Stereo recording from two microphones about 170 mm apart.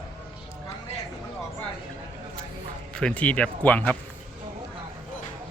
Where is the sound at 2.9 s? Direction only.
5° left (ahead or behind).